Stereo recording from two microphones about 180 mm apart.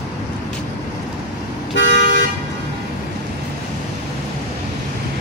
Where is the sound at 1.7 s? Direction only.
75° left (ahead or behind).